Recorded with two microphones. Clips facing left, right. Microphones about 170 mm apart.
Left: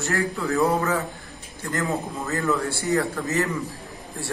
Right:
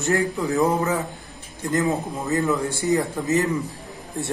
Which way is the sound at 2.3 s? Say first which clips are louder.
Right 3 dB; 15° right (ahead or behind).